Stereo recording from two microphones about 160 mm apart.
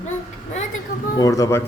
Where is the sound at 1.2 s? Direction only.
20° left (ahead or behind).